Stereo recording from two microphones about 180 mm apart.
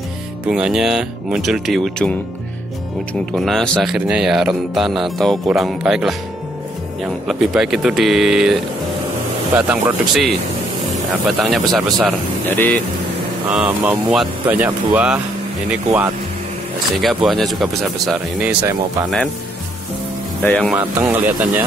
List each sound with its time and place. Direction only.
0.5 s speech: 5° right (ahead or behind)
3.3 s speech: centre (ahead or behind)
7.2 s speech: centre (ahead or behind)
9.6 s speech: 10° right (ahead or behind)
11.2 s speech: centre (ahead or behind)
12.4 s speech: 10° left (ahead or behind)
13.5 s speech: 10° right (ahead or behind)
17.0 s speech: centre (ahead or behind)
20.4 s speech: 5° left (ahead or behind)
20.7 s speech: 10° right (ahead or behind)